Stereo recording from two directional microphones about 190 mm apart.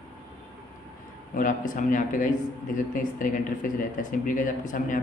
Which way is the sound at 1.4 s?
45° left (ahead or behind).